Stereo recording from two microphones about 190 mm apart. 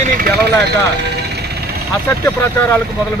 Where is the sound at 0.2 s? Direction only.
60° right (ahead or behind).